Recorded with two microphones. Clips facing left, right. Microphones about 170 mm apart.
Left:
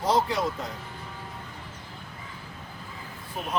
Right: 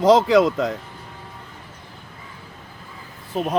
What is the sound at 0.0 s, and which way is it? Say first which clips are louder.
Speech: right 11 dB; 90° right.